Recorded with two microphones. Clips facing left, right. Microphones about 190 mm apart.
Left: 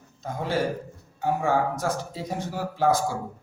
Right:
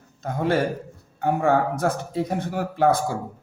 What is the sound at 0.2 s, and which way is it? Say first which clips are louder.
A man's voice: right 4 dB; 60° right (ahead or behind).